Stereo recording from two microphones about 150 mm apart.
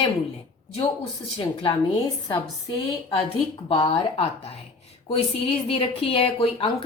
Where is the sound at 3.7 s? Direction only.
40° left (ahead or behind).